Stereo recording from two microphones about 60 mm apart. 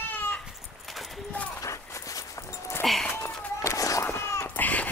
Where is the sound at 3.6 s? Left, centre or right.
Left.